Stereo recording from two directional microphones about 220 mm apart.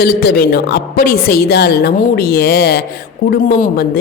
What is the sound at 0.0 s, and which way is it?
Speech, 45° left (ahead or behind).